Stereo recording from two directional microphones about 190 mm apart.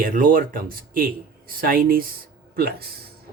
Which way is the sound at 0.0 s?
45° right (ahead or behind).